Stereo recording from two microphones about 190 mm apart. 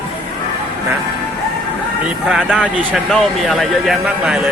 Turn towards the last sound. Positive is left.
turn(degrees=-5)  # may be behind; listen again after turning